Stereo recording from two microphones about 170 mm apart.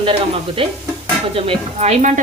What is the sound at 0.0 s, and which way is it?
A woman's voice, 30° right (ahead or behind).